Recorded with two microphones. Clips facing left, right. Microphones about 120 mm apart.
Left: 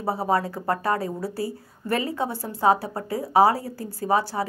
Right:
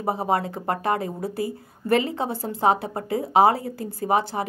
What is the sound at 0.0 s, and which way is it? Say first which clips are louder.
A woman's voice: even; 20° right (ahead or behind).